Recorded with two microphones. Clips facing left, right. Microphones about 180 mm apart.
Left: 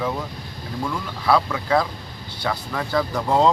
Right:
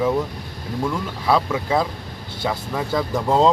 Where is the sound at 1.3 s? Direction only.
20° right (ahead or behind).